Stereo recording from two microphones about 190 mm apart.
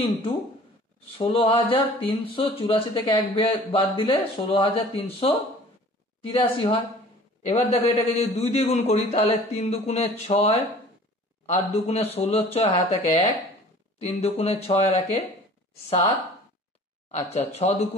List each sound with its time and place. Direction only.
0.0 s a man's voice: 30° left (ahead or behind)
17.1 s a man's voice: 35° left (ahead or behind)